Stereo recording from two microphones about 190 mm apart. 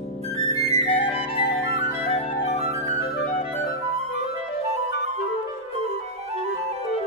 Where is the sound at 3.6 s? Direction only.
35° right (ahead or behind).